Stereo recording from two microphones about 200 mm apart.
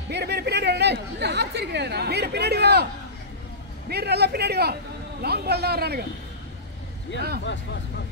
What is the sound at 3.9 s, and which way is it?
A man's voice, 55° right (ahead or behind).